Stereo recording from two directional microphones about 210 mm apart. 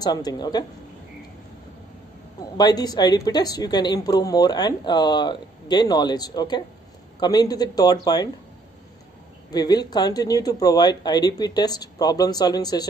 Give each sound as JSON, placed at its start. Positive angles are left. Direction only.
{"t": 0.0, "sound": "a woman's voice", "side_deg": 20}
{"t": 2.5, "sound": "a woman's voice", "side_deg": 20}
{"t": 9.5, "sound": "a woman's voice", "side_deg": 20}